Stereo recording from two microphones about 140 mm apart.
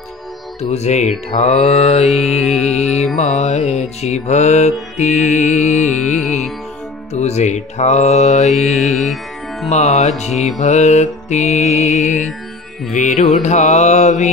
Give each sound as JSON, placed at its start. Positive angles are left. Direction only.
{"t": 0.6, "sound": "mantra", "side_deg": 50}
{"t": 2.1, "sound": "music", "side_deg": 5}
{"t": 2.6, "sound": "mantra", "side_deg": 50}
{"t": 4.9, "sound": "music", "side_deg": 55}
{"t": 7.2, "sound": "mantra", "side_deg": 55}
{"t": 8.7, "sound": "music", "side_deg": 0}
{"t": 9.7, "sound": "mantra", "side_deg": 55}
{"t": 10.6, "sound": "music", "side_deg": 55}